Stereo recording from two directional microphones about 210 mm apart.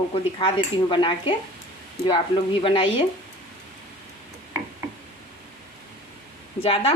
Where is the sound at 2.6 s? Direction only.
25° left (ahead or behind).